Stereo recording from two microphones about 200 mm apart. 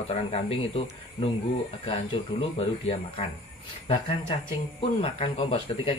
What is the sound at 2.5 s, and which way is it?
Speech, 30° left (ahead or behind).